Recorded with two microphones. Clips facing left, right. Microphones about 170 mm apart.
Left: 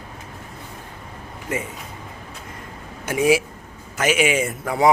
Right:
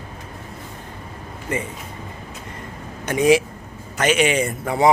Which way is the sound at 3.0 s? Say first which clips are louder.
Right 2 dB; 5° left (ahead or behind).